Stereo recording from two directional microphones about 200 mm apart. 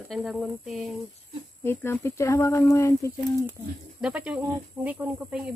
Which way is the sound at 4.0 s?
5° right (ahead or behind).